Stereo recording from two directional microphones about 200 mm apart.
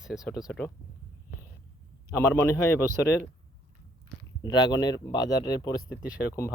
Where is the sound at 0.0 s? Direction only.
Centre (ahead or behind).